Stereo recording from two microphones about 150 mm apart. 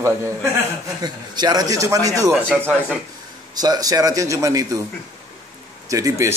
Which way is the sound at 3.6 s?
25° right (ahead or behind).